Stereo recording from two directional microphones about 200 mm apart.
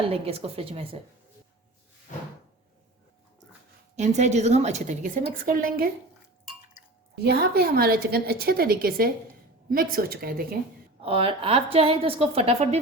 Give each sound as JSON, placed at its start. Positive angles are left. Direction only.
{"t": 0.1, "sound": "a woman's voice", "side_deg": -30}
{"t": 3.9, "sound": "a woman's voice", "side_deg": -35}
{"t": 7.3, "sound": "a woman's voice", "side_deg": -50}
{"t": 11.0, "sound": "a woman's voice", "side_deg": -25}